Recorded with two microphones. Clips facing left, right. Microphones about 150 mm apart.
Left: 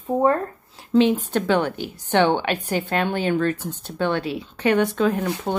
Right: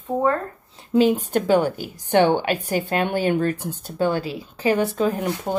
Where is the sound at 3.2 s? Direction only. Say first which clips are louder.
Right 1 dB; 15° right (ahead or behind).